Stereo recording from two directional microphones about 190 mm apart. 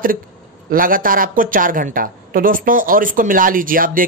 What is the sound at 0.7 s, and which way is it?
A woman's voice, 45° right (ahead or behind).